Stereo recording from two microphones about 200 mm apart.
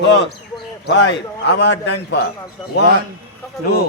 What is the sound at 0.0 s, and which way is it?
A man's voice, 60° left (ahead or behind).